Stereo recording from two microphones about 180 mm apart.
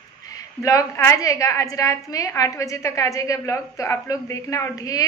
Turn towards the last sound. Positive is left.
turn(degrees=20)  # may be behind; listen again after turning